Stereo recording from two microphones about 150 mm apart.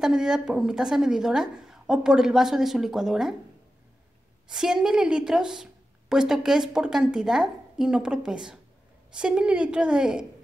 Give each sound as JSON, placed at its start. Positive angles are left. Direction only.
{"t": 0.0, "sound": "a woman's voice", "side_deg": -5}
{"t": 4.5, "sound": "a woman's voice", "side_deg": -5}